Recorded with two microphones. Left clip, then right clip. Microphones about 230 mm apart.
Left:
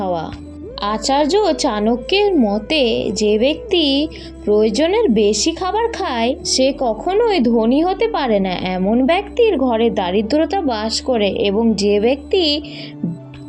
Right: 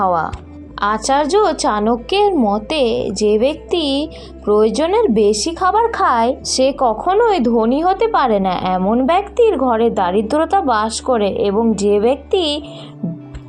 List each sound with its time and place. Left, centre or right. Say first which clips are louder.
0.0 s speech: right 5 dB; centre
2.4 s a woman's voice: right 1 dB; right
2.6 s speech: even; centre